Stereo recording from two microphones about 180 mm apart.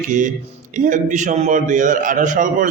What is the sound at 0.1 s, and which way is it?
A man's voice, 45° right (ahead or behind).